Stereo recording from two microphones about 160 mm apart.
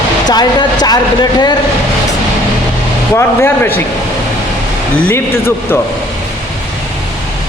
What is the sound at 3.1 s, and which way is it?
Speech, 15° left (ahead or behind).